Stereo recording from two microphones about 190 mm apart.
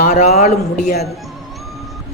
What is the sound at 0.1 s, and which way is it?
Speech, 35° left (ahead or behind).